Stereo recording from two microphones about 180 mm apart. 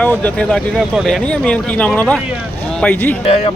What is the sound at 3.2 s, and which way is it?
Speech, 35° left (ahead or behind).